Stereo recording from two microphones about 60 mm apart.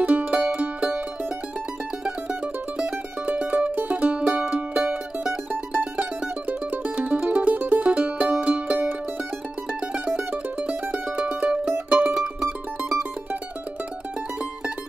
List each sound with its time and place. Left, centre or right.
0.0 s music: right
2.0 s mandolin: centre
3.3 s music: right
10.9 s mandolin: right
11.9 s music: centre